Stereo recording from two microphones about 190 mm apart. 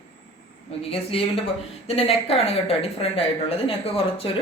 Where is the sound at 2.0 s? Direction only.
30° left (ahead or behind).